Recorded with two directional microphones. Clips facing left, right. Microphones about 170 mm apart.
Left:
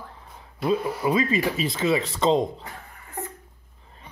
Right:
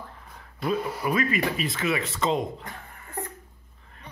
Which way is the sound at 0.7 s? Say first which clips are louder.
Left 3 dB; 25° left (ahead or behind).